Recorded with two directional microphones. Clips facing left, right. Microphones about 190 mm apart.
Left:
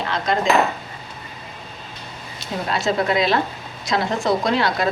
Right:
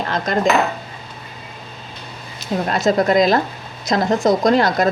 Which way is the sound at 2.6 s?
45° right (ahead or behind).